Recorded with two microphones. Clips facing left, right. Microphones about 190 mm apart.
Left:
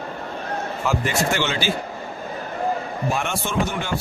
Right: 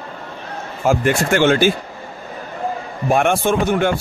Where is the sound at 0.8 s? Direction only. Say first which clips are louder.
Right 7 dB; 50° right (ahead or behind).